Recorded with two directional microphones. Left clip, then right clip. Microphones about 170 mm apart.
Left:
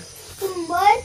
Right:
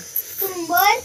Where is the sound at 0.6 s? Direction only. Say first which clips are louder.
Even; 25° right (ahead or behind).